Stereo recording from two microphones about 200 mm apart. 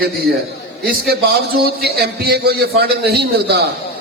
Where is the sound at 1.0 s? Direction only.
50° right (ahead or behind).